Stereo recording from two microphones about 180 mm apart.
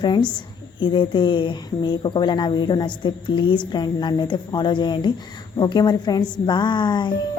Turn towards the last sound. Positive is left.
turn(degrees=25)  # may be behind; listen again after turning